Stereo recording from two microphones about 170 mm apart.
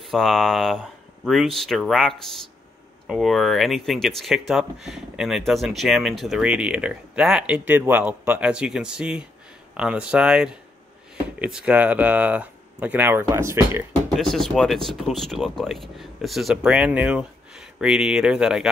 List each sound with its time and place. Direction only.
0.0 s speech: centre (ahead or behind); by 13.8 s 15° right (ahead or behind)
14.1 s speech: centre (ahead or behind)